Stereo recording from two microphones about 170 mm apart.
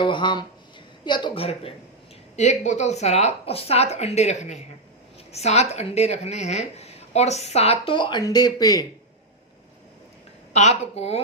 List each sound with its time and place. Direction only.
0.0 s a woman's voice: 25° left (ahead or behind)
2.3 s a woman's voice: 45° left (ahead or behind); by 8.9 s 20° left (ahead or behind)
10.5 s a woman's voice: 40° left (ahead or behind)